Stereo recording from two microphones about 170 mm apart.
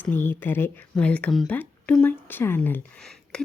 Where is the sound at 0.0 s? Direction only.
10° left (ahead or behind).